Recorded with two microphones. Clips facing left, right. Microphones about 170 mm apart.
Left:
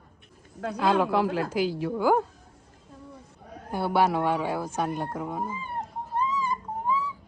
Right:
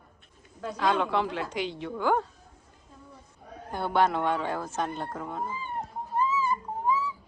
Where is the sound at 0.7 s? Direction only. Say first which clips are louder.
Left 3 dB; 5° left (ahead or behind).